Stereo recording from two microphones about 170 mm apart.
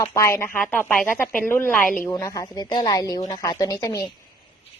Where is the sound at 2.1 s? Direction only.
20° left (ahead or behind).